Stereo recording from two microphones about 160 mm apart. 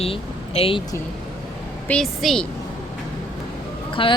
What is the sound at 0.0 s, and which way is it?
Speech, 35° left (ahead or behind).